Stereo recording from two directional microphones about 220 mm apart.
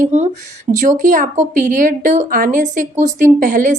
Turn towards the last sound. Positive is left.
turn(degrees=-35)  # may be behind; listen again after turning